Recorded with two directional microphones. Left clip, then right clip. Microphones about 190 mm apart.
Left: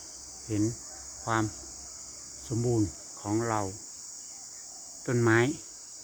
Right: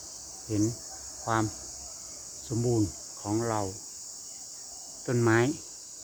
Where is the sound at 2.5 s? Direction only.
10° left (ahead or behind).